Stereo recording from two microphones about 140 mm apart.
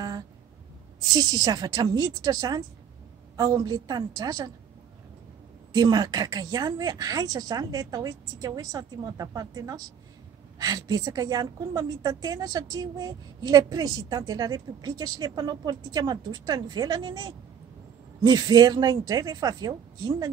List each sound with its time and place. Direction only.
1.0 s a woman's voice: 30° right (ahead or behind)
5.7 s a woman's voice: 30° right (ahead or behind)